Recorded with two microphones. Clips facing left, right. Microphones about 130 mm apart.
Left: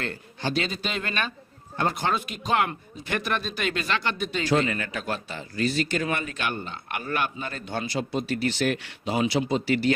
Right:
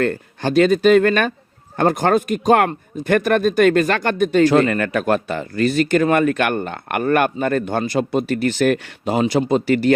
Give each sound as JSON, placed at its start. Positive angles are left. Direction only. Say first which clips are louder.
{"t": 0.0, "sound": "speech", "louder": "right 11 dB", "side_deg": -50}